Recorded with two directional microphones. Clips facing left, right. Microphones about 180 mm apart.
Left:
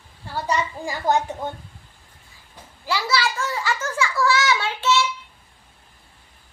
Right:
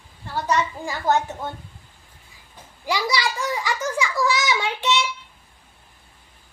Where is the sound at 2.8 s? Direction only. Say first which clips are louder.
Even; 15° right (ahead or behind).